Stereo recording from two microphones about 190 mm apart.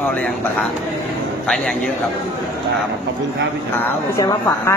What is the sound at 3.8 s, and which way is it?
Speech, 15° left (ahead or behind).